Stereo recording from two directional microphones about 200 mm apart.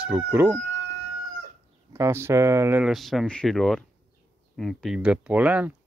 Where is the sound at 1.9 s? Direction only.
15° right (ahead or behind).